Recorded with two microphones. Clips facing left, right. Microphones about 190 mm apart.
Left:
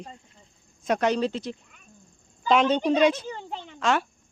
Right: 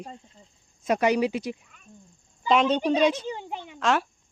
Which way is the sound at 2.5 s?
Centre (ahead or behind).